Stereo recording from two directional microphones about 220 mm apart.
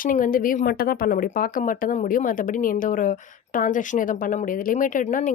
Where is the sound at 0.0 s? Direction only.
40° left (ahead or behind).